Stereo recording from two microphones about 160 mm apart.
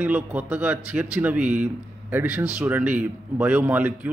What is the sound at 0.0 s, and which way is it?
Speech, 10° right (ahead or behind).